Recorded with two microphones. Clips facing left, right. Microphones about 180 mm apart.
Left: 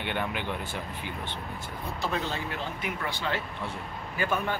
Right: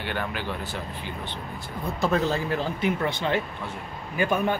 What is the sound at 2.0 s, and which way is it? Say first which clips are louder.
Speech: right 8 dB; 40° right (ahead or behind).